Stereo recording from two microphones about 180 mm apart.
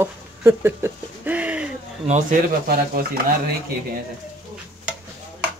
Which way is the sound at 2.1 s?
50° right (ahead or behind).